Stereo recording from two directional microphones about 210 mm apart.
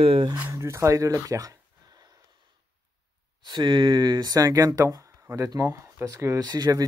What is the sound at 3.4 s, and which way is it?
Speech, 20° right (ahead or behind).